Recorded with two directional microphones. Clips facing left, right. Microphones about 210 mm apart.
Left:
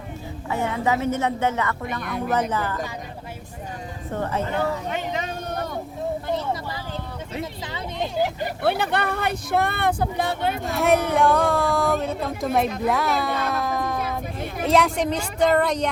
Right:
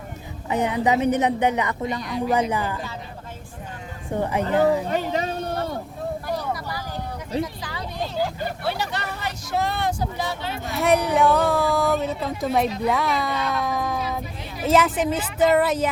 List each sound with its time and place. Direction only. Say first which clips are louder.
0.4 s a woman's voice: right 3 dB; 20° right (ahead or behind)
2.0 s speech: right 1 dB; 55° left (ahead or behind)
2.3 s a woman's voice: right 1 dB; 10° right (ahead or behind)
4.1 s a woman's voice: right 4 dB; 15° right (ahead or behind)
4.9 s a sound: right 3 dB; 35° right (ahead or behind)
6.2 s vehicle: left 1 dB; 25° left (ahead or behind)
7.6 s a sound: left 1 dB; 20° left (ahead or behind)
8.6 s speech: left 8 dB; 55° left (ahead or behind)
10.6 s speech: right 1 dB; centre (ahead or behind)